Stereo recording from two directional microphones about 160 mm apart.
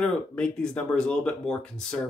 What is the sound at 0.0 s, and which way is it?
Speech, 5° left (ahead or behind).